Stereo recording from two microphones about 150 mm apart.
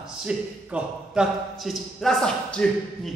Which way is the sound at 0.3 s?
5° right (ahead or behind).